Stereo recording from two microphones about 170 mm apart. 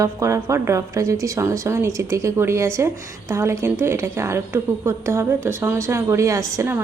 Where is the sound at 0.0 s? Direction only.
20° right (ahead or behind).